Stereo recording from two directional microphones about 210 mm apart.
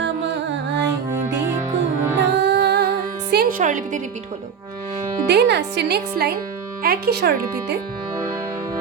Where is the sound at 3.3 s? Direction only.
40° right (ahead or behind).